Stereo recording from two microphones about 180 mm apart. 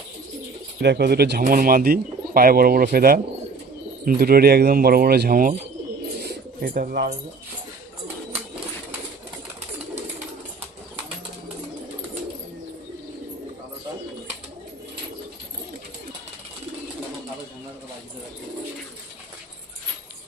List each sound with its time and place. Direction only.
0.8 s speech: 65° right (ahead or behind); by 5.5 s 50° right (ahead or behind)
6.1 s bird: 55° right (ahead or behind)